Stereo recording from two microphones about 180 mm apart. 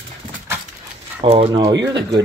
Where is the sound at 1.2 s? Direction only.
30° right (ahead or behind).